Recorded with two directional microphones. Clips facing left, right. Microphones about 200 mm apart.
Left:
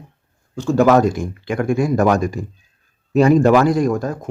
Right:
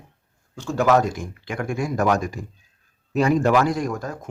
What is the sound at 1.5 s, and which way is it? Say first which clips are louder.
Speech: left 8 dB; 40° left (ahead or behind).